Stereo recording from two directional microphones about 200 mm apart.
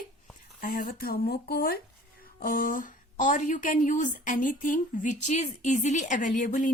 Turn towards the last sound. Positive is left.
turn(degrees=40)  # may be behind; listen again after turning